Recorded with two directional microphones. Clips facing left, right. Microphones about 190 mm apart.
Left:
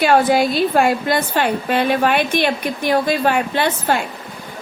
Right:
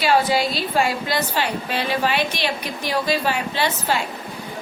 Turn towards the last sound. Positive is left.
turn(degrees=55)  # may be behind; listen again after turning